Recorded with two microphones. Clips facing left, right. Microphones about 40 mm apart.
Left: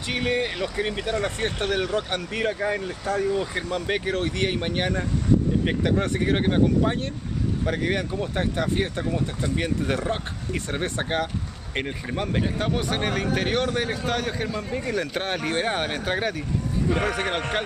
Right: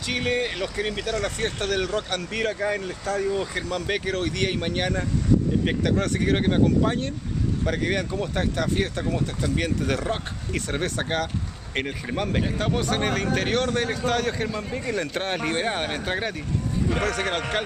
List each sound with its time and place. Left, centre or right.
0.7 s a man's voice: centre
3.5 s speech: centre
6.5 s a man's voice: centre
11.7 s speech: centre
12.5 s a man's voice: centre
17.0 s speech: centre